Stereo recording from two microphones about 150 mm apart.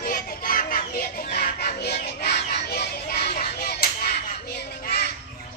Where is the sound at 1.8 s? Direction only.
90° left.